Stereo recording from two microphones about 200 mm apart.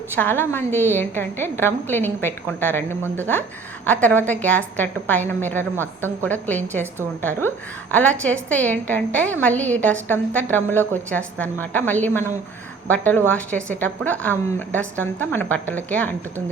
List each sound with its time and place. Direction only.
0.2 s a woman's voice: 10° left (ahead or behind)